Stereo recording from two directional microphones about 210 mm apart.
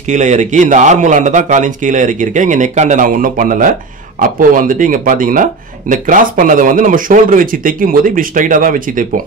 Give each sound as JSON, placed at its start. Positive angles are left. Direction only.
{"t": 0.1, "sound": "speech", "side_deg": -35}